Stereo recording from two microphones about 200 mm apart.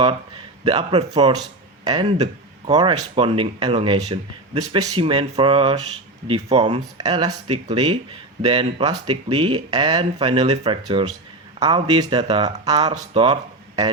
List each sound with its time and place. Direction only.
0.6 s speech: 25° right (ahead or behind)